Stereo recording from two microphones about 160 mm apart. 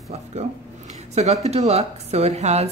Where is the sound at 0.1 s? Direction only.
45° right (ahead or behind).